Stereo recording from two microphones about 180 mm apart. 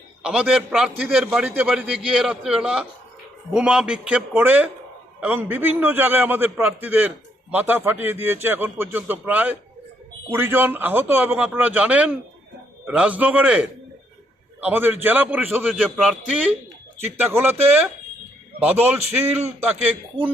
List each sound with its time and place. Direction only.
0.2 s a man's voice: 5° right (ahead or behind)
19.1 s speech: 35° right (ahead or behind)
19.5 s a man's voice: 10° right (ahead or behind)